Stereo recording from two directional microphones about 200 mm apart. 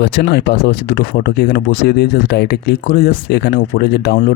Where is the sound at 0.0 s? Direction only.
55° left (ahead or behind).